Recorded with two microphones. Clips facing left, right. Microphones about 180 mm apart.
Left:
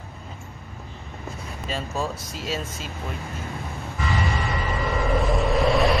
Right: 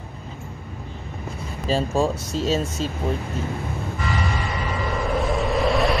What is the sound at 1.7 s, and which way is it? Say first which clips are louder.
Speech: right 8 dB; 30° right (ahead or behind).